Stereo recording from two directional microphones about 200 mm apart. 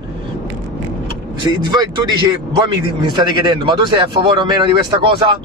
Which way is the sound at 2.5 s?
20° right (ahead or behind).